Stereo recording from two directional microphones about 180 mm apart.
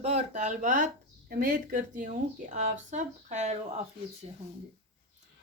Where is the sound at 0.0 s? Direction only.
40° right (ahead or behind).